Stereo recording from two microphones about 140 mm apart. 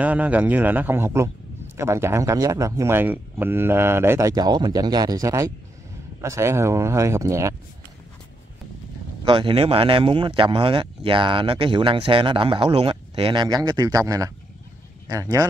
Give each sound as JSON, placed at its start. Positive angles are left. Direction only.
{"t": 0.0, "sound": "a man's voice", "side_deg": -10}
{"t": 9.2, "sound": "speech", "side_deg": -35}